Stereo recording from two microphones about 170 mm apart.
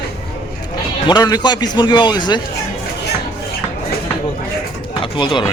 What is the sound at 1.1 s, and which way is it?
A man's voice, 25° left (ahead or behind).